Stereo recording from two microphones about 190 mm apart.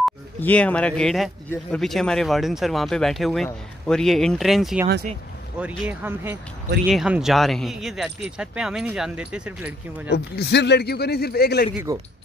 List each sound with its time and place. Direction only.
0.0 s speech: 5° left (ahead or behind)
10.0 s speech: 60° left (ahead or behind)